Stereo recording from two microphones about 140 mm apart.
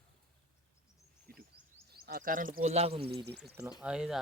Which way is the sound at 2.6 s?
50° right (ahead or behind).